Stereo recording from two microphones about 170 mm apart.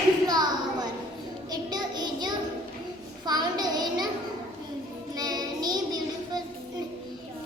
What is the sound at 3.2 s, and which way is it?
Child singing, 25° right (ahead or behind).